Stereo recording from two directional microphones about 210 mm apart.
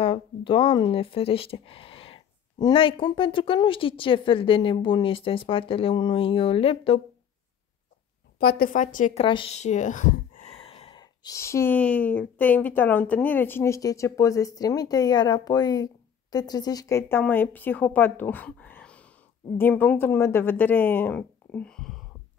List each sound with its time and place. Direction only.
0.0 s speech: 25° left (ahead or behind)
8.4 s speech: 45° left (ahead or behind); by 21.9 s 5° left (ahead or behind)